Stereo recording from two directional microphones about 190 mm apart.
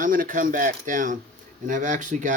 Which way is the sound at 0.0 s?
45° right (ahead or behind).